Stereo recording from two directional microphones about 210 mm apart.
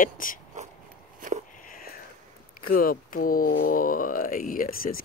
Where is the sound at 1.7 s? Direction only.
45° left (ahead or behind).